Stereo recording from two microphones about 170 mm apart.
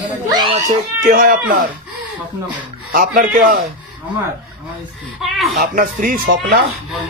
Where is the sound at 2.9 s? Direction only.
55° right (ahead or behind).